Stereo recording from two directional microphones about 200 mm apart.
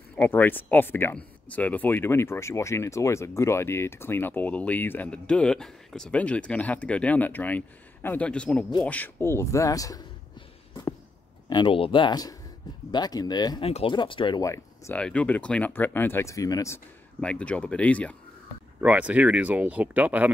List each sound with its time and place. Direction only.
0.1 s speech: 10° left (ahead or behind)
11.4 s speech: 25° left (ahead or behind); by 18.1 s 5° left (ahead or behind)
18.8 s speech: 5° right (ahead or behind)